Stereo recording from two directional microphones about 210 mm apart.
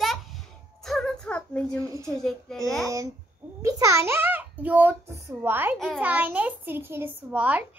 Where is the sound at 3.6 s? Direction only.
15° right (ahead or behind).